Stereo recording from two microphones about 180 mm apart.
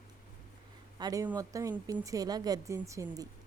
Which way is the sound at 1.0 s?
20° right (ahead or behind).